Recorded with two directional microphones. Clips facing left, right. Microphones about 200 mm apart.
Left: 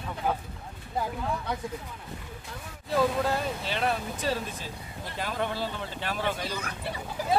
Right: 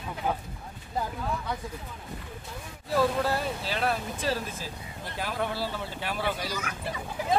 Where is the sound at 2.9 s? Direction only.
Centre (ahead or behind).